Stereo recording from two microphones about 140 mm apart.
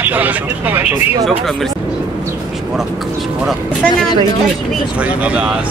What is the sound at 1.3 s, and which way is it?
Speech, centre (ahead or behind).